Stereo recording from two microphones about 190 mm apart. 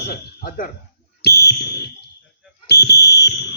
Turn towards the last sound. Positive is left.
turn(degrees=60)  # may be behind; listen again after turning